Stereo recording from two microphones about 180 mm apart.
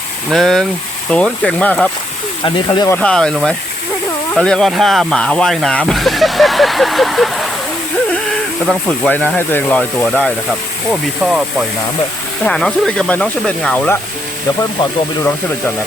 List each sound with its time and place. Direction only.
0.3 s speech: centre (ahead or behind)
2.4 s speech: 25° left (ahead or behind)
2.9 s speech: 5° left (ahead or behind)
8.6 s speech: 5° left (ahead or behind)
12.5 s speech: 5° left (ahead or behind)